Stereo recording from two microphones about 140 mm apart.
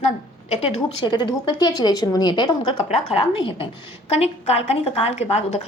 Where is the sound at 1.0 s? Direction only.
30° left (ahead or behind).